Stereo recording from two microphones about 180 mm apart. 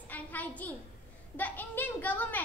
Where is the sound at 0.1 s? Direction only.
10° left (ahead or behind).